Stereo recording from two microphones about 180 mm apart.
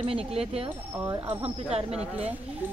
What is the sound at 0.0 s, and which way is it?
Speech, 30° right (ahead or behind).